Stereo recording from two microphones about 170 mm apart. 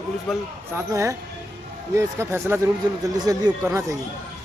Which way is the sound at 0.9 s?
15° right (ahead or behind).